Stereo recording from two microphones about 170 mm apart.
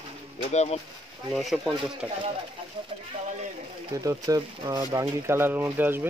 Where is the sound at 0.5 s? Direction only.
40° left (ahead or behind).